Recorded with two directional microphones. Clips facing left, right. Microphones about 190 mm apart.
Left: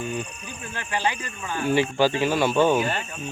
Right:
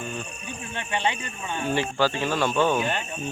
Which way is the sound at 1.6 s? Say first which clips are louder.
Left 4 dB; 15° left (ahead or behind).